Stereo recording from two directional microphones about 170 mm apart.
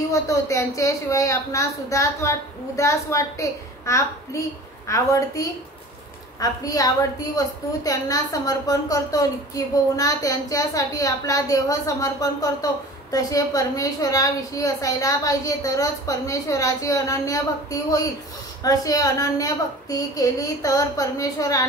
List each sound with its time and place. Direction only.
0.1 s a woman's voice: 20° left (ahead or behind)